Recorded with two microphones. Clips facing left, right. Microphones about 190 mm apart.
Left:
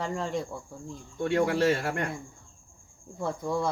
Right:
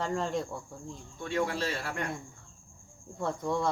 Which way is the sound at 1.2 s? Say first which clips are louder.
Left 7 dB; 60° left (ahead or behind).